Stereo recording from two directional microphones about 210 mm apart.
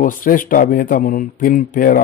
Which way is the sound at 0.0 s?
40° left (ahead or behind).